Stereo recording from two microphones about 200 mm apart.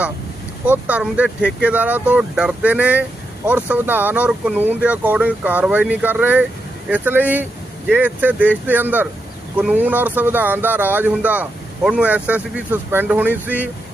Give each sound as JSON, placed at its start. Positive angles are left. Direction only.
{"t": 0.6, "sound": "speech", "side_deg": -5}